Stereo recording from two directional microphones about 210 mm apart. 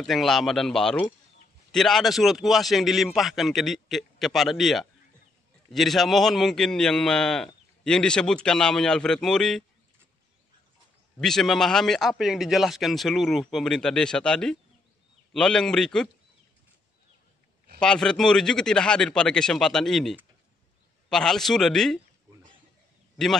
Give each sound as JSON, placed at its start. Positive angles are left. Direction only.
{"t": 0.0, "sound": "a man's voice", "side_deg": 0}
{"t": 11.1, "sound": "a man's voice", "side_deg": 0}
{"t": 17.7, "sound": "a man's voice", "side_deg": 5}
{"t": 23.2, "sound": "a man's voice", "side_deg": 0}